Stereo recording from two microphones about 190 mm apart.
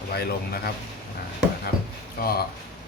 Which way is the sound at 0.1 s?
55° left (ahead or behind).